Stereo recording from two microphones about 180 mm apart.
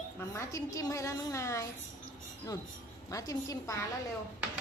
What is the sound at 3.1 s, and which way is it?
Speech, 20° left (ahead or behind).